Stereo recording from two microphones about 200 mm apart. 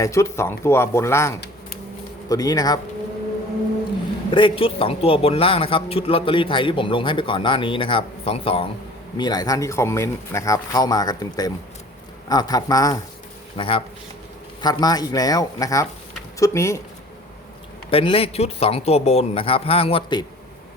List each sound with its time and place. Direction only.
0.0 s a man's voice: 15° left (ahead or behind)
4.3 s a man's voice: 25° left (ahead or behind)
17.9 s a man's voice: 30° left (ahead or behind)